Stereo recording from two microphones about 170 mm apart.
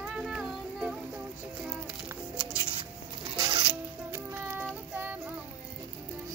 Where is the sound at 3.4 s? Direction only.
25° right (ahead or behind).